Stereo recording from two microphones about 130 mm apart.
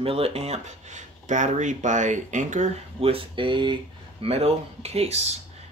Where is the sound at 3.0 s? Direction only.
45° right (ahead or behind).